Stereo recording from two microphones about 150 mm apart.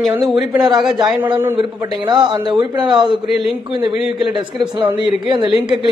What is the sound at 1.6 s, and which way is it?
A man's voice, 30° right (ahead or behind).